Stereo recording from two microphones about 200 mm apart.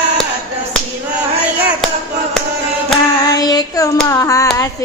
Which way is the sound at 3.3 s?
20° left (ahead or behind).